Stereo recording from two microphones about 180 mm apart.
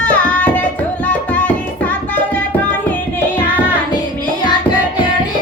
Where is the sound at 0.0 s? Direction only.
10° left (ahead or behind).